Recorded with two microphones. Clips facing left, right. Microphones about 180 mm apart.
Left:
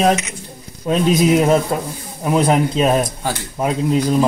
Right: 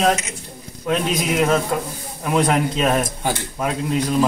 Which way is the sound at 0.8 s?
30° left (ahead or behind).